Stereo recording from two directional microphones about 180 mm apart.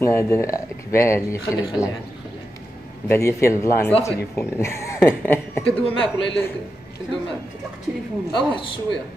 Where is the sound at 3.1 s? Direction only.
15° left (ahead or behind).